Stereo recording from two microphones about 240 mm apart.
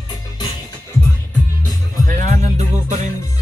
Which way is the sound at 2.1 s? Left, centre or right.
Right.